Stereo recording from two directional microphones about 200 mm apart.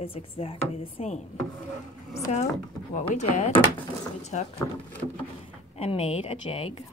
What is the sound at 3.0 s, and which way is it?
Speech, 30° left (ahead or behind).